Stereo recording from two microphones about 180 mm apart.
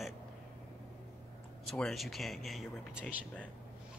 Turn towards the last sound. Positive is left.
turn(degrees=0)  # may be behind; listen again after turning